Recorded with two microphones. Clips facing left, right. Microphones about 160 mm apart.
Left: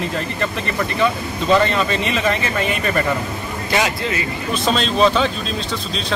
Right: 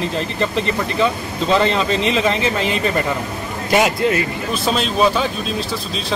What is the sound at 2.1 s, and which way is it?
Speech, 25° right (ahead or behind).